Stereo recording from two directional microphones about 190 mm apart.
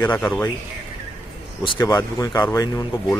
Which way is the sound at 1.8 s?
15° left (ahead or behind).